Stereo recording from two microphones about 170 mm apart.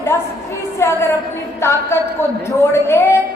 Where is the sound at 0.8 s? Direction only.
15° left (ahead or behind).